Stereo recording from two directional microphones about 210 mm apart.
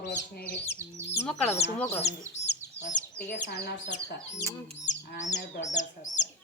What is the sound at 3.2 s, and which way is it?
Speech, 55° left (ahead or behind).